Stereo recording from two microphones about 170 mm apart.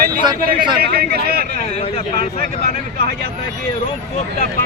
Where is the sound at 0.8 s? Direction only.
60° right (ahead or behind).